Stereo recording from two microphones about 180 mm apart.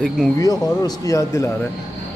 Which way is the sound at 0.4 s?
20° left (ahead or behind).